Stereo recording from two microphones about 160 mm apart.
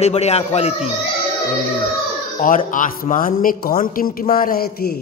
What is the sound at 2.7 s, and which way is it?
A man's voice, 55° left (ahead or behind).